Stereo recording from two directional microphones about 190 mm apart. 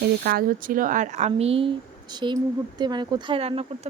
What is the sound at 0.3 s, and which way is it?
Speech, 50° right (ahead or behind).